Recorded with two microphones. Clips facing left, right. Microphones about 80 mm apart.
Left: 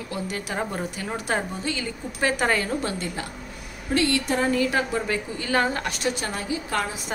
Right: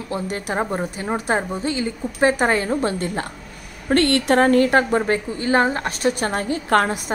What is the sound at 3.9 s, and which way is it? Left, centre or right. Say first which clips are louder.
A woman's voice: right 6 dB; right.